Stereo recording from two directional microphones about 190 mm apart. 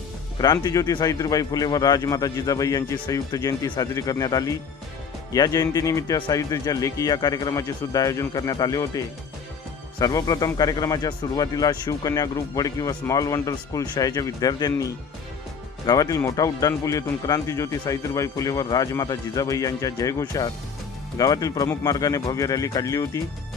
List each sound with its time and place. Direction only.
0.4 s speech: 20° left (ahead or behind)
15.9 s speech: 15° left (ahead or behind)